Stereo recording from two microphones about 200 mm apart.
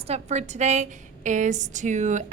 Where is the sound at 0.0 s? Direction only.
35° right (ahead or behind).